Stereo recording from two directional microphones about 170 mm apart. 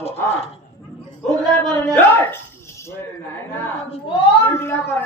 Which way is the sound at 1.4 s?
5° left (ahead or behind).